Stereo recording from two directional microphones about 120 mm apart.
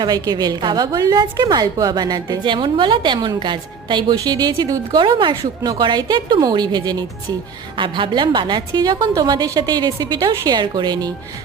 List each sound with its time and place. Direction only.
0.0 s a woman's voice: 35° right (ahead or behind)